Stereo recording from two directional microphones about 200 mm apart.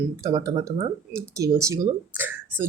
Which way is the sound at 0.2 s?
15° right (ahead or behind).